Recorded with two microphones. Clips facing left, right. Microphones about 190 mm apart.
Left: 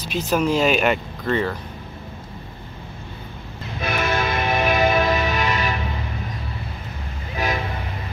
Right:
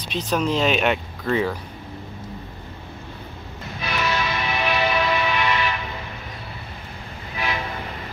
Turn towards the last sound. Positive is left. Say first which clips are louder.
# left 3 dB
turn(degrees=40)  # may be behind; listen again after turning